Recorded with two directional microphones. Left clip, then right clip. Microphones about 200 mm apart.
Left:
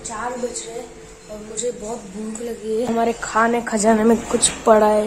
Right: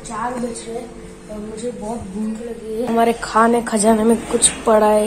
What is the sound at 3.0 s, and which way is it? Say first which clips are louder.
Speech: right 5 dB; 5° left (ahead or behind).